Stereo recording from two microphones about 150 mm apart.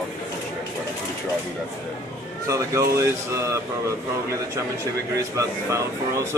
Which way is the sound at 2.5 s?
20° right (ahead or behind).